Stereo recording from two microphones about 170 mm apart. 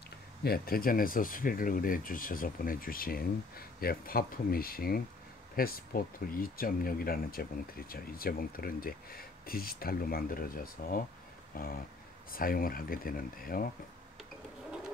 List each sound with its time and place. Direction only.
0.4 s speech: 65° left (ahead or behind)
11.5 s a sound: 60° left (ahead or behind)
12.3 s speech: 60° left (ahead or behind)